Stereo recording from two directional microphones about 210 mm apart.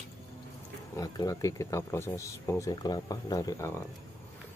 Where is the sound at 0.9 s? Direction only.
15° left (ahead or behind).